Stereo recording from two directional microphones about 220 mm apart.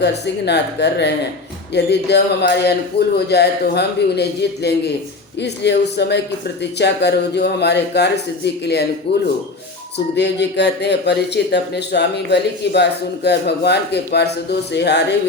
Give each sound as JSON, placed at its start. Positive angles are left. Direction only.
{"t": 0.0, "sound": "a man's voice", "side_deg": 50}